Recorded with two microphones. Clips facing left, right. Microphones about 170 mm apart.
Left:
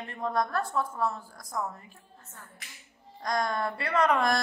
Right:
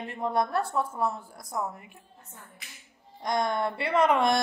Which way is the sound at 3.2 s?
25° right (ahead or behind).